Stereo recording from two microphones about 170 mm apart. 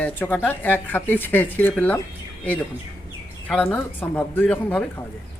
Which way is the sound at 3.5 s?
5° left (ahead or behind).